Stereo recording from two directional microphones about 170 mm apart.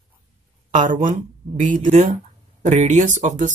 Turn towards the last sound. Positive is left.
turn(degrees=-45)  # may be behind; listen again after turning